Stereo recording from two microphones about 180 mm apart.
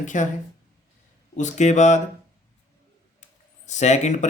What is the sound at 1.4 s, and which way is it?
Speech, 40° left (ahead or behind).